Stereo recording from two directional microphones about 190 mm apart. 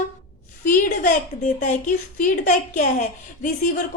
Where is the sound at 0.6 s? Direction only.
40° left (ahead or behind).